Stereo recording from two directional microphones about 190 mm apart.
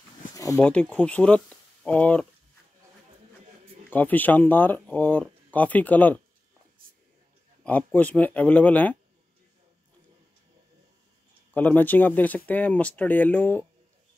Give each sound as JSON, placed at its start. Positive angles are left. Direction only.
{"t": 0.4, "sound": "a sound", "side_deg": 15}
{"t": 0.7, "sound": "speech", "side_deg": 5}
{"t": 3.9, "sound": "speech", "side_deg": 10}
{"t": 6.8, "sound": "a sound", "side_deg": -50}
{"t": 7.6, "sound": "speech", "side_deg": 10}
{"t": 11.5, "sound": "speech", "side_deg": 10}